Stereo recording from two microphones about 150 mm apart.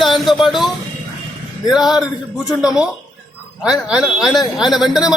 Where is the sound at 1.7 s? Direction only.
Centre (ahead or behind).